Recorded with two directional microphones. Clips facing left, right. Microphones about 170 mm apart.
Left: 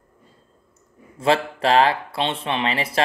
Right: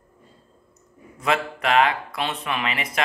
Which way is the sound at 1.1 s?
30° left (ahead or behind).